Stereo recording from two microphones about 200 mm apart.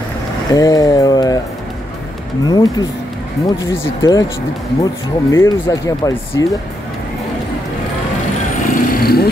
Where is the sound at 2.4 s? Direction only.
20° left (ahead or behind).